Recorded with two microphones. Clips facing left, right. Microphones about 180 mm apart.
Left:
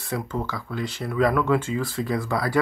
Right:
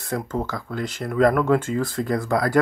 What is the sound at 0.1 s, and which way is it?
Speech, 45° right (ahead or behind).